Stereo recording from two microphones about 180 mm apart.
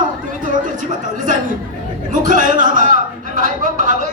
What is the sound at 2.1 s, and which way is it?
A man's voice, 45° right (ahead or behind).